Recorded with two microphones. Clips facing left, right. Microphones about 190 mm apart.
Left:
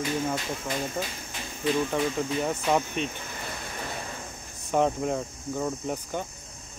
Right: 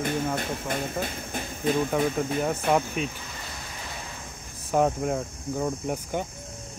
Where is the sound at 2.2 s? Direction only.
5° right (ahead or behind).